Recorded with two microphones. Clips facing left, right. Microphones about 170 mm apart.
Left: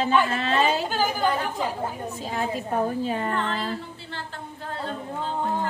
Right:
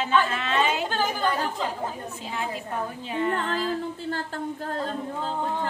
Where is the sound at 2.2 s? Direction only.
40° left (ahead or behind).